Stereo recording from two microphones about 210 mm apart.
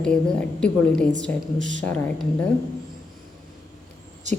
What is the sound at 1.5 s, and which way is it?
Speech, 35° right (ahead or behind).